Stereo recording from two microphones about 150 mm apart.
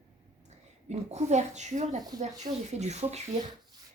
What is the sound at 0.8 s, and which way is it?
Speech, 50° right (ahead or behind).